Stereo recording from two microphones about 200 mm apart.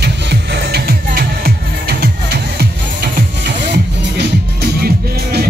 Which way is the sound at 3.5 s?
55° right (ahead or behind).